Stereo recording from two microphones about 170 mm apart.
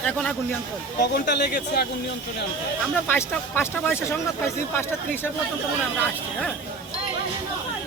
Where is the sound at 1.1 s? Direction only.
70° left (ahead or behind).